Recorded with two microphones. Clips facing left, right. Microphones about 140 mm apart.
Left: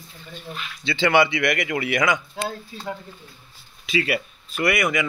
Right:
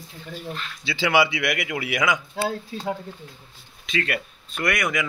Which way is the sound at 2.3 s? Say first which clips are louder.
Right 3 dB; 35° right (ahead or behind).